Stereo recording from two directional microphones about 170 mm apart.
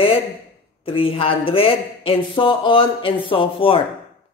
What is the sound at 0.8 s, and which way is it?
Speech, 35° left (ahead or behind).